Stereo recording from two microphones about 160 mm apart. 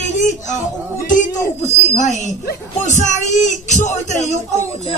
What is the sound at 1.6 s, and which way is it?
Speech, 45° left (ahead or behind).